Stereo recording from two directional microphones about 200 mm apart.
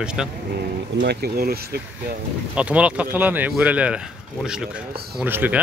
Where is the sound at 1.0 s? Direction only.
55° right (ahead or behind).